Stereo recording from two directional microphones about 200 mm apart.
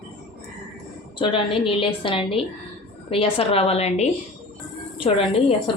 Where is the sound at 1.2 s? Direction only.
25° left (ahead or behind).